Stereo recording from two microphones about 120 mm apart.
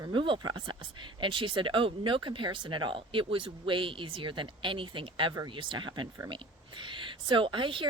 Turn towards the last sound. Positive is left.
turn(degrees=-45)  # may be behind; listen again after turning